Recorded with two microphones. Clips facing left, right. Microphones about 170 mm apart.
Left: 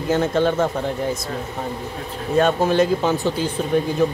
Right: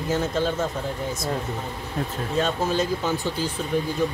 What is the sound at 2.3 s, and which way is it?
Speech, 60° left (ahead or behind).